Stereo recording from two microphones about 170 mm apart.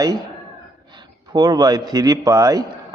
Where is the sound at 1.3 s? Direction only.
25° right (ahead or behind).